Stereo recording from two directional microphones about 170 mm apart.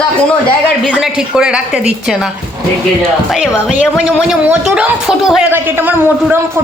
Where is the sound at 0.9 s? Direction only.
5° right (ahead or behind).